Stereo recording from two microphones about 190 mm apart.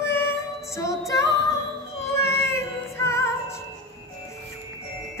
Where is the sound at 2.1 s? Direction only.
15° left (ahead or behind).